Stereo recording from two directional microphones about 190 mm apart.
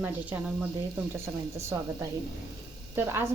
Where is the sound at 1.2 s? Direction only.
15° right (ahead or behind).